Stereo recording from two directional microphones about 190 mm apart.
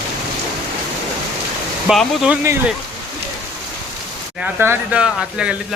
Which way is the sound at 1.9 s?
5° right (ahead or behind).